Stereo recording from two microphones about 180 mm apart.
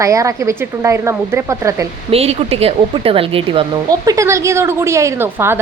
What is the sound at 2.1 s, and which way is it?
Speech, 35° right (ahead or behind).